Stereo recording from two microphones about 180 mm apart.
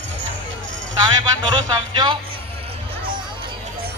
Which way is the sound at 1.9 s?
25° right (ahead or behind).